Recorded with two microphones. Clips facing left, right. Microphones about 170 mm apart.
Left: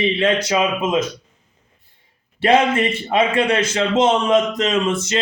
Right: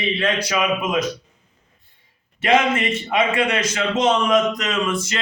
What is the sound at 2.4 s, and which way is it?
Speech, 30° left (ahead or behind).